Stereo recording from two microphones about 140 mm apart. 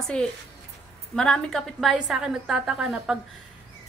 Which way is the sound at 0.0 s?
5° left (ahead or behind).